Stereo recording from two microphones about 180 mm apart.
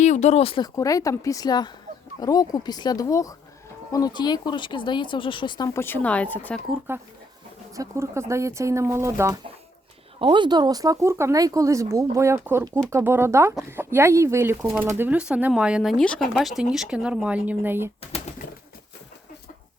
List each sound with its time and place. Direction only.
0.0 s speech: 40° left (ahead or behind); by 6.6 s 10° left (ahead or behind)
6.9 s speech: 10° right (ahead or behind)
10.2 s speech: 30° right (ahead or behind); by 17.9 s 10° right (ahead or behind)